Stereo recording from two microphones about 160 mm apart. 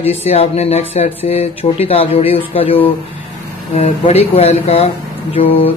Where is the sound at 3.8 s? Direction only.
40° left (ahead or behind).